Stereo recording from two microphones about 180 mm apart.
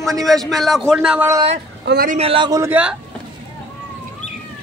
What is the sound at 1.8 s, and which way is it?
Speech, 55° right (ahead or behind).